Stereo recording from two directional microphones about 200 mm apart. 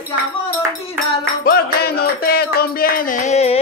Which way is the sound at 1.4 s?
50° left (ahead or behind).